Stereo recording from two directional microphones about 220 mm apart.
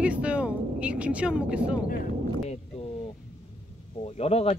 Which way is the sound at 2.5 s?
25° left (ahead or behind).